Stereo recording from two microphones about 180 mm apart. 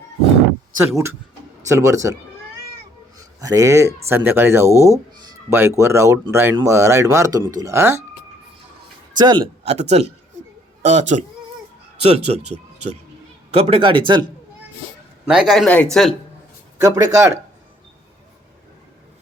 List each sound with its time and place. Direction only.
0.8 s speech: 15° right (ahead or behind)
3.4 s speech: 20° right (ahead or behind)
9.1 s a man's voice: 25° right (ahead or behind)
13.5 s speech: 30° right (ahead or behind)
15.3 s speech: 5° right (ahead or behind)
16.8 s speech: 20° right (ahead or behind)